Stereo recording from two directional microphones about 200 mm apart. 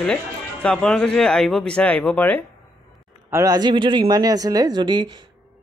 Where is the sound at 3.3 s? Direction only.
15° right (ahead or behind).